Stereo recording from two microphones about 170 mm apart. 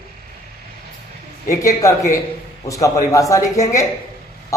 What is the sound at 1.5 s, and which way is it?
A man's voice, 20° left (ahead or behind).